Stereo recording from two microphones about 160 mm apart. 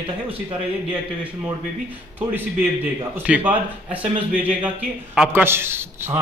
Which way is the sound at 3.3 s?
10° right (ahead or behind).